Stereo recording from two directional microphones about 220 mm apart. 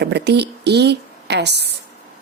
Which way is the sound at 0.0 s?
50° right (ahead or behind).